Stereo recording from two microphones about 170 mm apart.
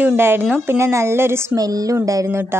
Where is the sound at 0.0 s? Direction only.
15° right (ahead or behind).